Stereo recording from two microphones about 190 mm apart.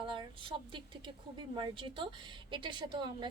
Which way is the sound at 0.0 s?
25° right (ahead or behind).